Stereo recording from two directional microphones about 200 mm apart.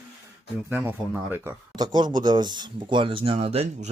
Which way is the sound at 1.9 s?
20° right (ahead or behind).